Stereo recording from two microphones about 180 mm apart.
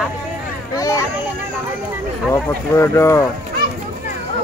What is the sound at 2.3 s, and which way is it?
Speech, 15° left (ahead or behind).